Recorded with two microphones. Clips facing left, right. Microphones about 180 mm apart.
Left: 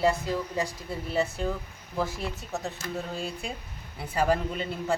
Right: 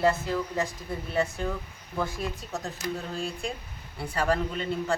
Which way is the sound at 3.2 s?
5° left (ahead or behind).